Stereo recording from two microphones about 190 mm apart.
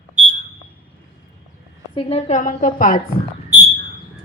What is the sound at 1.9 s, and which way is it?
A woman's voice, 30° left (ahead or behind).